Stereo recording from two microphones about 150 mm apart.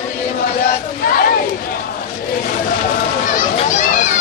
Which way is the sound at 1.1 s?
80° left.